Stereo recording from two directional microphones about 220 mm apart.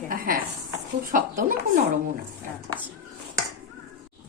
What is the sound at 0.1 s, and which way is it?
Speech, 40° right (ahead or behind).